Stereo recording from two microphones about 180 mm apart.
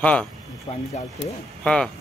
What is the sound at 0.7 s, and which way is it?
Speech, 30° left (ahead or behind).